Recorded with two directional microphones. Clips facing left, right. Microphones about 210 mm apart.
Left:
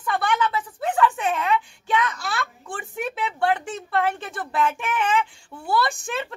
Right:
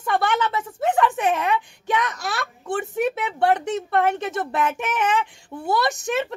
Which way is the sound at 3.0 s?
20° right (ahead or behind).